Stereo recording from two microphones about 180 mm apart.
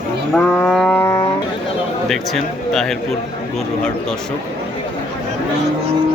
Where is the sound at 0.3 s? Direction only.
5° left (ahead or behind).